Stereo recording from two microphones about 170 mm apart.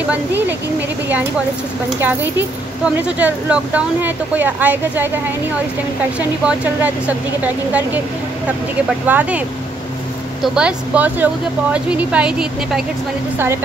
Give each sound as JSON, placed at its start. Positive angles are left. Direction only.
{"t": 2.0, "sound": "speech", "side_deg": -10}
{"t": 6.1, "sound": "speech", "side_deg": -10}
{"t": 9.0, "sound": "speech", "side_deg": -10}
{"t": 10.4, "sound": "speech", "side_deg": -5}